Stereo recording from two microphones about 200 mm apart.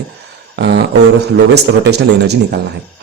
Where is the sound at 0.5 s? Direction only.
55° right (ahead or behind).